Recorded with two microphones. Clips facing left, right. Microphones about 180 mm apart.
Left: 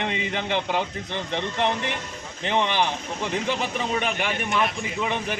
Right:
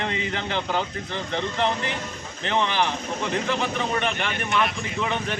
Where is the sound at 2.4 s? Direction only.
15° left (ahead or behind).